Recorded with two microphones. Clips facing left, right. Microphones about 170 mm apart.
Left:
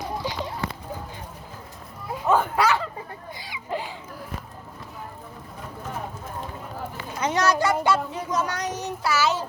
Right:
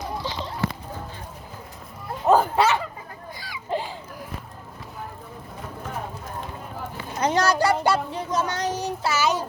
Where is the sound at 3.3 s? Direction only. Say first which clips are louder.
Right 1 dB; 20° left (ahead or behind).